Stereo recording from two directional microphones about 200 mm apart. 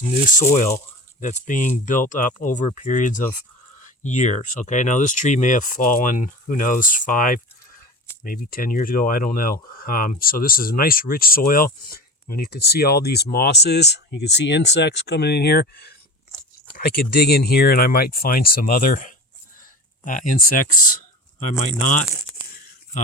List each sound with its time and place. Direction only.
1.2 s speech: 40° left (ahead or behind)